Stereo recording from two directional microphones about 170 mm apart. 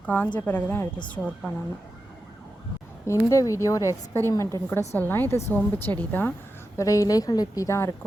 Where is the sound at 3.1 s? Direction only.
20° left (ahead or behind).